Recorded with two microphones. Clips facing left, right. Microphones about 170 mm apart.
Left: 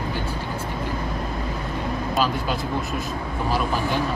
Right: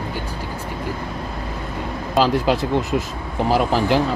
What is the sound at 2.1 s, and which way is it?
Speech, 90° right.